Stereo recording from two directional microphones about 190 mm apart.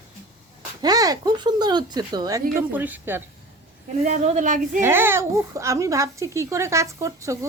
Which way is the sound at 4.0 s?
40° right (ahead or behind).